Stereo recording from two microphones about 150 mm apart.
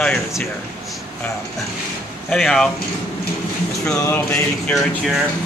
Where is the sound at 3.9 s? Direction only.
20° left (ahead or behind).